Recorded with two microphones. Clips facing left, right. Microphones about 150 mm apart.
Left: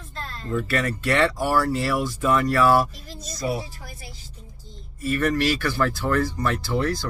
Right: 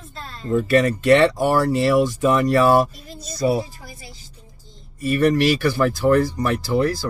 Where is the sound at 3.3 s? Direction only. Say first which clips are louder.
Right 7 dB; 30° right (ahead or behind).